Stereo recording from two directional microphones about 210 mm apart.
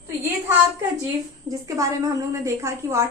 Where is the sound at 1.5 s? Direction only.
15° right (ahead or behind).